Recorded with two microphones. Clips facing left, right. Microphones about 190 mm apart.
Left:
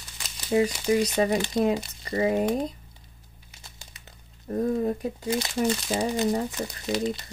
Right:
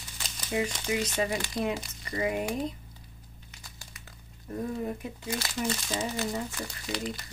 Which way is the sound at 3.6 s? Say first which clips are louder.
Left 2 dB; 20° left (ahead or behind).